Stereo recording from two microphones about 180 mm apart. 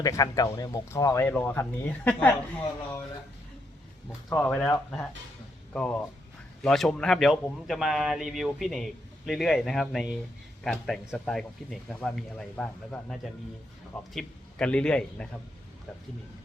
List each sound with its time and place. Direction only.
0.0 s speech: 20° left (ahead or behind)
4.4 s a man's voice: 10° left (ahead or behind)